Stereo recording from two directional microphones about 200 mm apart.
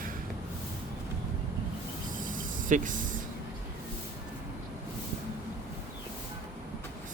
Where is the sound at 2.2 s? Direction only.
40° right (ahead or behind).